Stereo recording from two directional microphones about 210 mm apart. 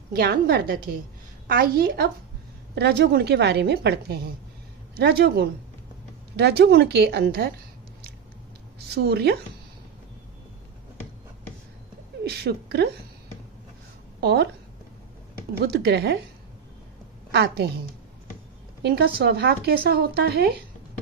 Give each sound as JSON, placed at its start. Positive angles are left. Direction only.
{"t": 0.1, "sound": "speech", "side_deg": -45}
{"t": 8.9, "sound": "speech", "side_deg": -50}
{"t": 12.2, "sound": "speech", "side_deg": -50}
{"t": 14.2, "sound": "speech", "side_deg": -50}
{"t": 15.5, "sound": "speech", "side_deg": -50}
{"t": 17.3, "sound": "speech", "side_deg": -50}
{"t": 18.8, "sound": "speech", "side_deg": -50}